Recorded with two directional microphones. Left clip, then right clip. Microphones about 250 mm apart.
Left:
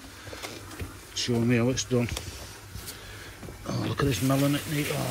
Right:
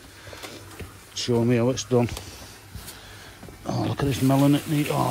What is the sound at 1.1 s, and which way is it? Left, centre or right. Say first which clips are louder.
Speech: right 4 dB; centre.